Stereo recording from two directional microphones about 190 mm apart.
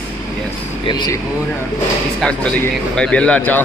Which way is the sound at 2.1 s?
5° left (ahead or behind).